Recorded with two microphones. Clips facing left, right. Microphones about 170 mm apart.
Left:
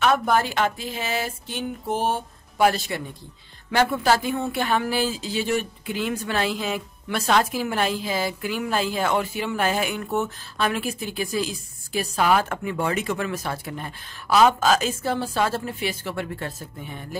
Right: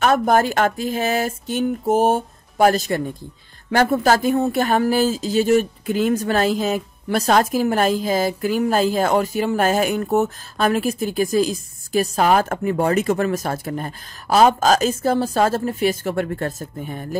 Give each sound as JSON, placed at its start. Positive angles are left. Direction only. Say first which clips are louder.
{"t": 0.0, "sound": "speech", "louder": "right 4 dB", "side_deg": -45}